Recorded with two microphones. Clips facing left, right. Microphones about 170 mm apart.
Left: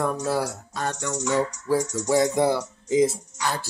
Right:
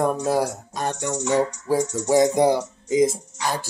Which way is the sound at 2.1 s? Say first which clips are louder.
Right 3 dB; 15° right (ahead or behind).